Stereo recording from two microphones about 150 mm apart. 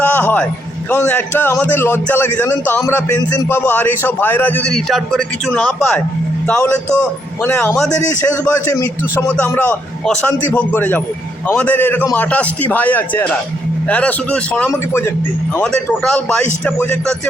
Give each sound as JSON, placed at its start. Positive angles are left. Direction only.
{"t": 0.0, "sound": "a sound", "side_deg": 10}
{"t": 0.9, "sound": "a man's voice", "side_deg": 15}
{"t": 9.2, "sound": "a man's voice", "side_deg": 10}
{"t": 15.6, "sound": "a man's voice", "side_deg": 5}